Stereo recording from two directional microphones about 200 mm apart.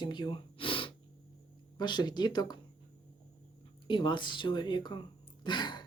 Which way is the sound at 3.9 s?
25° left (ahead or behind).